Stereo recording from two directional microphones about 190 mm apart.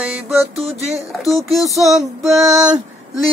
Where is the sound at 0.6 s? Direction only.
30° right (ahead or behind).